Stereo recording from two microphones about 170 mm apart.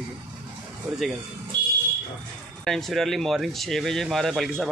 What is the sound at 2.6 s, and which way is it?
Speech, centre (ahead or behind).